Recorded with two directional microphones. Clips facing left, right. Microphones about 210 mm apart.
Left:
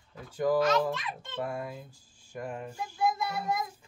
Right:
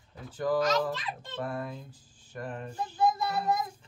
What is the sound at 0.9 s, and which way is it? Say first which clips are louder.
Speech: even; 35° right (ahead or behind).